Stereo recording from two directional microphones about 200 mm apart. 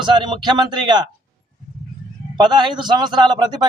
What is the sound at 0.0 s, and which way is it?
A man's voice, 25° right (ahead or behind).